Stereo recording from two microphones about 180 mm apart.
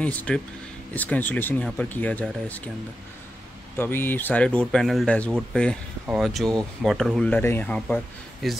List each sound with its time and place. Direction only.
0.0 s speech: 10° left (ahead or behind)
3.7 s speech: 10° left (ahead or behind)